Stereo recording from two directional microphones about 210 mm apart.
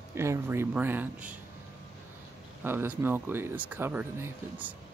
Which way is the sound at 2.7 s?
10° right (ahead or behind).